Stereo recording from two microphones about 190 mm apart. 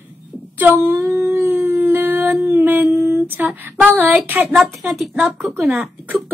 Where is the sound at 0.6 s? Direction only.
10° right (ahead or behind).